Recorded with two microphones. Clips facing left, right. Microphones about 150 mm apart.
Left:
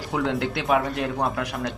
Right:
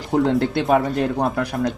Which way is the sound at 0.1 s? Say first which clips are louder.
Right 7 dB; 40° right (ahead or behind).